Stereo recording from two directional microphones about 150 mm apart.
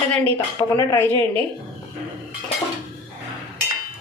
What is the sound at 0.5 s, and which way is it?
Speech, 20° left (ahead or behind).